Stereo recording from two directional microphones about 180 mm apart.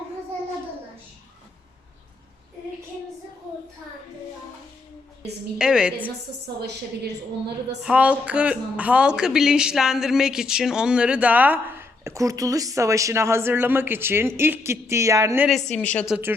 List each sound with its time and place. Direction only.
5.5 s a woman's voice: 5° right (ahead or behind)
6.6 s a woman's voice: 65° right (ahead or behind)
7.8 s speech: 5° right (ahead or behind)
15.7 s a woman's voice: 5° left (ahead or behind)